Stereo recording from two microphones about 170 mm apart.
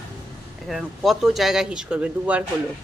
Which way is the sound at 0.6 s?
Centre (ahead or behind).